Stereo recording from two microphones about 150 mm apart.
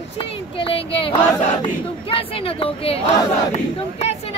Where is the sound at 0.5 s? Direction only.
35° left (ahead or behind).